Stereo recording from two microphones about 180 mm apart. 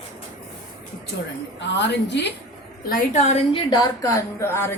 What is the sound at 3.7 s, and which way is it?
A woman's voice, 20° left (ahead or behind).